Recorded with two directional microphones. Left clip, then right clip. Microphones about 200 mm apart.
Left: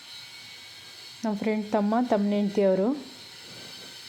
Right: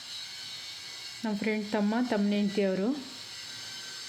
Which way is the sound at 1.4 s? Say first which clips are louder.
Left 4 dB; centre (ahead or behind).